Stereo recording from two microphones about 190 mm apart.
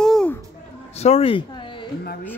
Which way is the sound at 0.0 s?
5° left (ahead or behind).